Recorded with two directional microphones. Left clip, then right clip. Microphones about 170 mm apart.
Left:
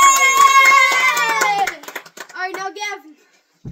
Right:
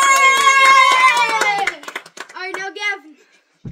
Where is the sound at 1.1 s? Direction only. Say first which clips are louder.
Even; 10° right (ahead or behind).